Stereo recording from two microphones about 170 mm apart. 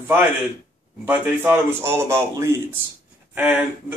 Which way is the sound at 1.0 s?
10° right (ahead or behind).